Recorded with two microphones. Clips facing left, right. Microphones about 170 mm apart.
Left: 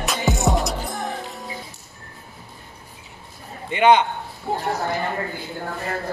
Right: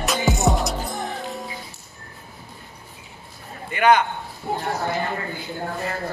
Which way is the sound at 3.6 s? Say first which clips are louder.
Left 2 dB; 20° left (ahead or behind).